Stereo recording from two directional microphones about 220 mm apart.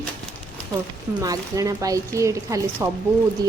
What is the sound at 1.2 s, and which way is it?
Speech, 15° right (ahead or behind).